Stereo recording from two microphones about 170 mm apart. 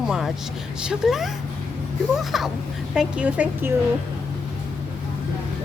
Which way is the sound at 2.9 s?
5° right (ahead or behind).